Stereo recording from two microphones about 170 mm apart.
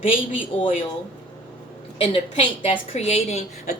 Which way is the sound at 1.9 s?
35° left (ahead or behind).